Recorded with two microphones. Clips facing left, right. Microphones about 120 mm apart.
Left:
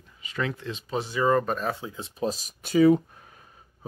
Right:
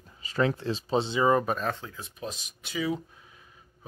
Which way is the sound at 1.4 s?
Centre (ahead or behind).